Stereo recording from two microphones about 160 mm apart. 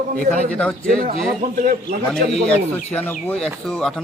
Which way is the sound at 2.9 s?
10° left (ahead or behind).